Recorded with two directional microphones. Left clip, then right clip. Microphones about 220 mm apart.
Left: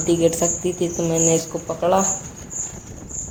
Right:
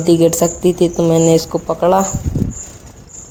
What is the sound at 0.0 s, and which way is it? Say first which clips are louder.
Speech: right 6 dB; 40° right (ahead or behind).